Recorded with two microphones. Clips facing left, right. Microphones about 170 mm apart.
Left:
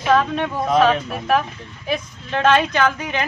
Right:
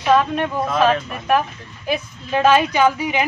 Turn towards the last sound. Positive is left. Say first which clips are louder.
# right 3 dB
turn(degrees=-10)  # may be behind; listen again after turning